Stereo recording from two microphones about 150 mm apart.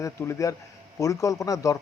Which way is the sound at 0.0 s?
20° left (ahead or behind).